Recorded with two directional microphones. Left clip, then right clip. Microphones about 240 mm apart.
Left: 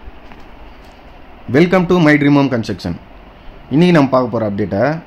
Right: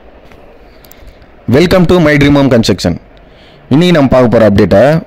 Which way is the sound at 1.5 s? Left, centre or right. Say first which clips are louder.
Right 5 dB; right.